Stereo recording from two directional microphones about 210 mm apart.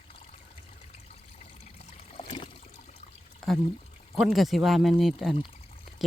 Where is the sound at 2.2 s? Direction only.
25° left (ahead or behind).